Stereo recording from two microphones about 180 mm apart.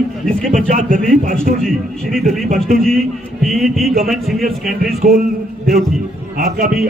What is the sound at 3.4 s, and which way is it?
Speech, centre (ahead or behind).